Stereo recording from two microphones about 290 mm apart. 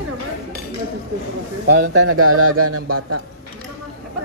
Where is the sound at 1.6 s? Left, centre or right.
Right.